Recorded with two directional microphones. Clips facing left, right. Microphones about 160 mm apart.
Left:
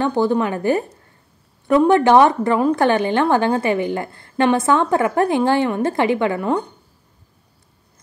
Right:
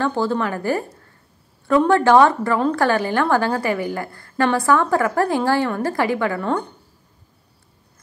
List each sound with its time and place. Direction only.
0.0 s a woman's voice: 20° left (ahead or behind)